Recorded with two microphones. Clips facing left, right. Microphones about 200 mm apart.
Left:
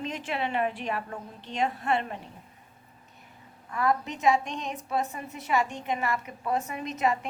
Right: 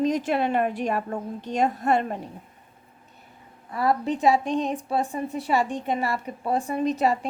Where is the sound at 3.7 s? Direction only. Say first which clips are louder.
Right 4 dB; 35° right (ahead or behind).